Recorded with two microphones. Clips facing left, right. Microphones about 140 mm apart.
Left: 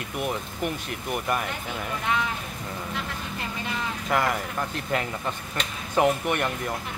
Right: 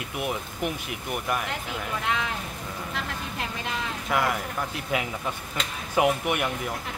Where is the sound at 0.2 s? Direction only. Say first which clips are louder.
Left 1 dB; 5° right (ahead or behind).